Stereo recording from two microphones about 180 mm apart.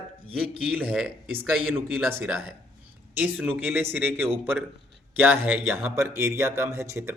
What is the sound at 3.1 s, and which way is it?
Speech, 10° right (ahead or behind).